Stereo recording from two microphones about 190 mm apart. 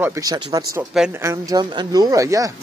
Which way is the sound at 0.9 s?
10° right (ahead or behind).